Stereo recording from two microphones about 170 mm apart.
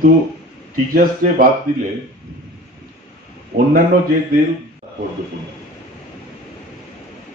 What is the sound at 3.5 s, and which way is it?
Speech, 65° right (ahead or behind).